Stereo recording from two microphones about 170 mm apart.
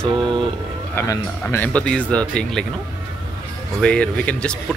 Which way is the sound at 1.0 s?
10° left (ahead or behind).